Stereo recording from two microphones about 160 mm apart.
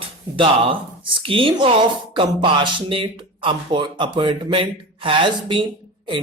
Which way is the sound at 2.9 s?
35° right (ahead or behind).